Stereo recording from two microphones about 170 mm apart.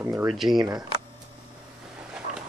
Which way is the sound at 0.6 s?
20° right (ahead or behind).